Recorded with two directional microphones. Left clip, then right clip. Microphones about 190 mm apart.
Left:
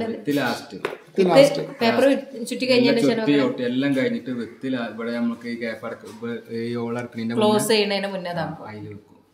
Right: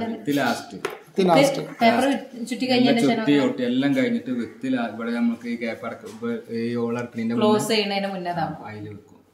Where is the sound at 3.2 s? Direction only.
5° left (ahead or behind).